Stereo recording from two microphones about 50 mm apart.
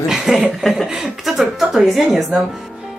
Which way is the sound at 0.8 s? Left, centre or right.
Centre.